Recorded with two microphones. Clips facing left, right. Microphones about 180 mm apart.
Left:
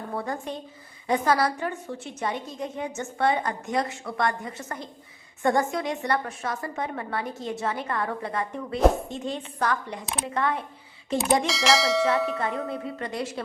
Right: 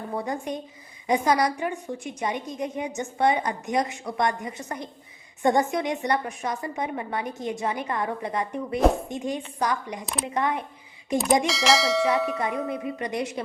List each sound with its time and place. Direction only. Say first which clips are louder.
0.1 s a woman's voice: right 2 dB; 15° right (ahead or behind)
11.4 s speech: right 1 dB; centre (ahead or behind)
12.4 s a woman's voice: right 1 dB; 15° right (ahead or behind)